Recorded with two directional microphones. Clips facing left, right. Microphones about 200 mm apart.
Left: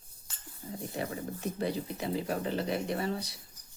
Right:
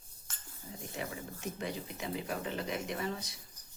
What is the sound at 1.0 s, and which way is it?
Speech, 35° left (ahead or behind).